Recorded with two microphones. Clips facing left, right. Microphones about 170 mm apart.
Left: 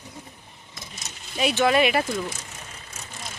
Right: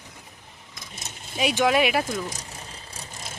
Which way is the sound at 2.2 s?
35° right (ahead or behind).